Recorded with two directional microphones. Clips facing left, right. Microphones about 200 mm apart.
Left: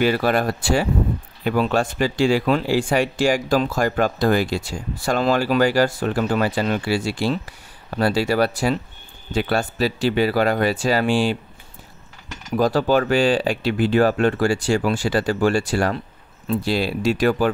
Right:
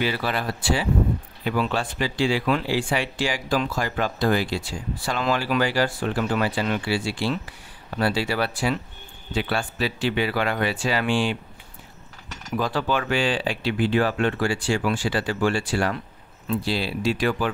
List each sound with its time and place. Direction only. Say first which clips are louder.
0.0 s speech: left 7 dB; 50° left (ahead or behind)
12.5 s speech: left 7 dB; 40° left (ahead or behind)